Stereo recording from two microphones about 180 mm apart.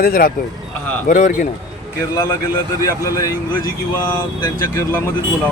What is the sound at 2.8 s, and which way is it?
Speech, 20° left (ahead or behind).